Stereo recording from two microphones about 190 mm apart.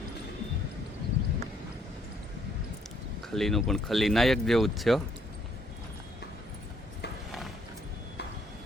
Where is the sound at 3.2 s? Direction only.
Centre (ahead or behind).